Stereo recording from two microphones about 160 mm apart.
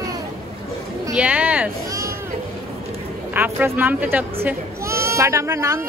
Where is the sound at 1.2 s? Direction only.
10° right (ahead or behind).